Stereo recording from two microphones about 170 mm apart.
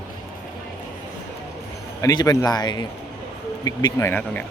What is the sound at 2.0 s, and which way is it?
A man's voice, 20° left (ahead or behind).